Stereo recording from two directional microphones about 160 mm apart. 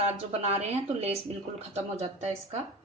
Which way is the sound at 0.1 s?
40° right (ahead or behind).